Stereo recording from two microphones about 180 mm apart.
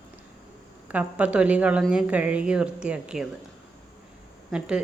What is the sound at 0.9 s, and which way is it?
A woman's voice, 5° right (ahead or behind).